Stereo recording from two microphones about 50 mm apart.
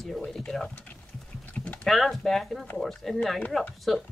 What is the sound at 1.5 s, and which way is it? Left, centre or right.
Typing, left.